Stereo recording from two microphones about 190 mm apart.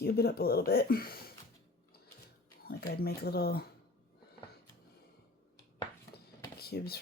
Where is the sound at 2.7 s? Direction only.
55° left (ahead or behind).